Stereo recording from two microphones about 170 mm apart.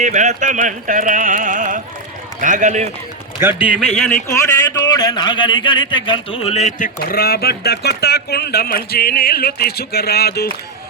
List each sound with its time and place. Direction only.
0.0 s a sound: 45° right (ahead or behind)
3.7 s speech: 5° right (ahead or behind)
4.3 s a man's voice: 20° left (ahead or behind); by 10.5 s 70° left (ahead or behind)